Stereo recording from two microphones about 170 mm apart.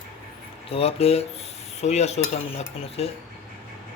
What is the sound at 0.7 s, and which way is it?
Stir, 35° left (ahead or behind).